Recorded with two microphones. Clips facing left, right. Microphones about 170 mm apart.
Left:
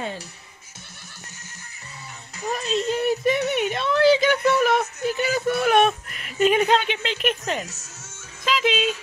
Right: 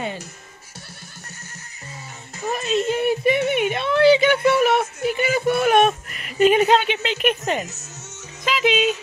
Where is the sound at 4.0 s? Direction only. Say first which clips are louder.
Right 3 dB; 65° right (ahead or behind).